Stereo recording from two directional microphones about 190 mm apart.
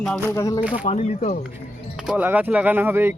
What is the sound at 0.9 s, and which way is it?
Speech, 35° left (ahead or behind).